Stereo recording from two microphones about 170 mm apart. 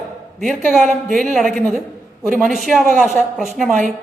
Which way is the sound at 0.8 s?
45° right (ahead or behind).